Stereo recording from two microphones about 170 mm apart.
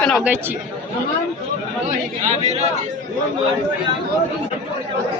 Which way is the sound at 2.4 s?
40° right (ahead or behind).